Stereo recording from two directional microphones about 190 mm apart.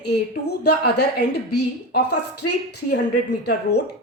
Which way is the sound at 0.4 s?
60° left (ahead or behind).